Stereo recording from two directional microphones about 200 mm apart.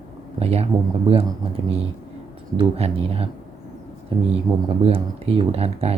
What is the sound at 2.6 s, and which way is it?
Speech, 30° right (ahead or behind).